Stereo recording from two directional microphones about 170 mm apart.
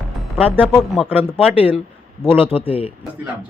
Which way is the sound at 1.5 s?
10° right (ahead or behind).